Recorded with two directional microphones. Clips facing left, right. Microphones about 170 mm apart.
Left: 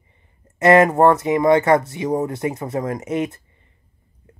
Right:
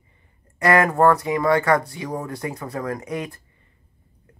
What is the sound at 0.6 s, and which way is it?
Speech, 20° left (ahead or behind).